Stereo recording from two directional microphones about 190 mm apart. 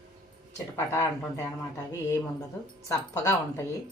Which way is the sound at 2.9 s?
15° left (ahead or behind).